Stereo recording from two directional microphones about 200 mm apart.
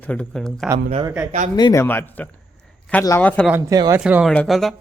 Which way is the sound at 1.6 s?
20° left (ahead or behind).